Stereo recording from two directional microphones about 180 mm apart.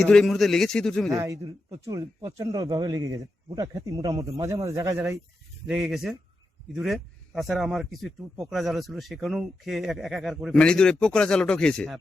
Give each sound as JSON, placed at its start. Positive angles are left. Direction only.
{"t": 0.0, "sound": "speech", "side_deg": 0}
{"t": 1.1, "sound": "speech", "side_deg": -20}
{"t": 5.6, "sound": "speech", "side_deg": 0}